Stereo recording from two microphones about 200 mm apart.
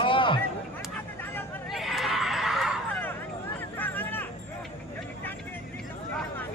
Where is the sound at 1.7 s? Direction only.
Centre (ahead or behind).